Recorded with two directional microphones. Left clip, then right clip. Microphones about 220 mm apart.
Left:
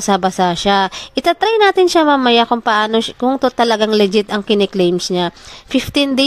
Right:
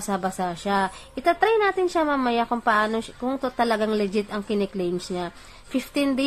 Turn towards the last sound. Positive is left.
turn(degrees=40)  # may be behind; listen again after turning